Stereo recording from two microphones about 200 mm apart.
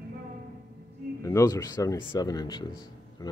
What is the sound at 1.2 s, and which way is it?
Speech, 15° left (ahead or behind).